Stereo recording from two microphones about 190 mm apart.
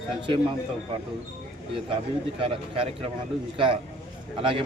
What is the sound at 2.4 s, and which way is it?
Speech, 30° right (ahead or behind).